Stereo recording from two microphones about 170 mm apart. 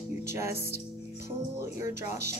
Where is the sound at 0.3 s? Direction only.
15° right (ahead or behind).